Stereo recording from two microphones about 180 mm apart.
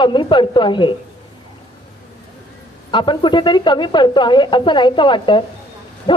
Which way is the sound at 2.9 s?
25° left (ahead or behind).